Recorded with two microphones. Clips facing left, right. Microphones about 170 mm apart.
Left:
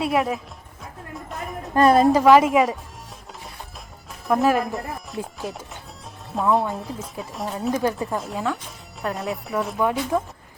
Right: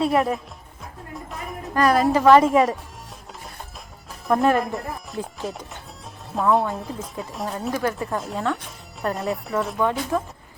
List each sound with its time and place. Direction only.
0.0 s speech: centre (ahead or behind)
1.7 s a woman's voice: 25° left (ahead or behind)
2.1 s speech: 5° left (ahead or behind)
4.3 s speech: centre (ahead or behind)
7.7 s a woman's voice: 20° left (ahead or behind)
7.9 s speech: centre (ahead or behind)